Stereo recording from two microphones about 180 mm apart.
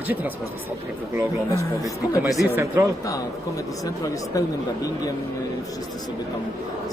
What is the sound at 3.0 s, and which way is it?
Speech, 20° left (ahead or behind).